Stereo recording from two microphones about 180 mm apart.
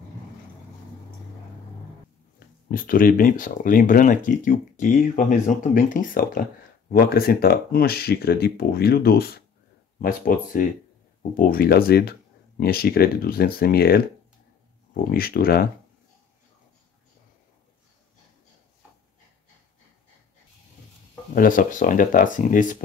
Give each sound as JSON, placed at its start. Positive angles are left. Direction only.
{"t": 2.7, "sound": "speech", "side_deg": 50}
{"t": 9.9, "sound": "speech", "side_deg": 50}
{"t": 15.0, "sound": "speech", "side_deg": 55}
{"t": 21.4, "sound": "speech", "side_deg": 50}